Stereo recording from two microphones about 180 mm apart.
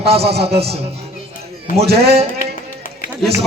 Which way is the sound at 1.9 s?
65° right (ahead or behind).